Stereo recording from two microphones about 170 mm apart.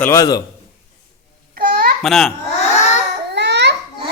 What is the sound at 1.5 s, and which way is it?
Babbling, 55° right (ahead or behind).